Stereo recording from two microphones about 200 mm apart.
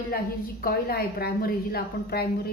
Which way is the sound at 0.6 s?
50° left (ahead or behind).